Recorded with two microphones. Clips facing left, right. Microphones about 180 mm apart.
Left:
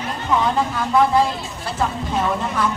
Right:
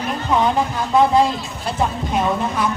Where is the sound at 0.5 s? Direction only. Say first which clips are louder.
Right 1 dB; 20° right (ahead or behind).